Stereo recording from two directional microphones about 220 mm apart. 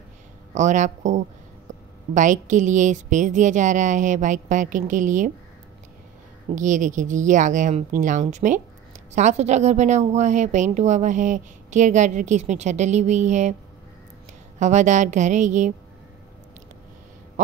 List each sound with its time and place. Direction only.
0.6 s a woman's voice: 35° right (ahead or behind)
6.5 s a woman's voice: 35° right (ahead or behind)
14.6 s a woman's voice: 35° right (ahead or behind)